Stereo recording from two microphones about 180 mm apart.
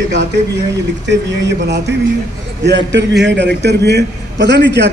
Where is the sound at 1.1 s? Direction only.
75° right (ahead or behind).